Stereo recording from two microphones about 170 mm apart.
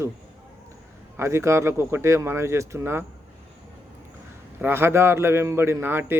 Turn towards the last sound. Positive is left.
turn(degrees=-10)  # may be behind; listen again after turning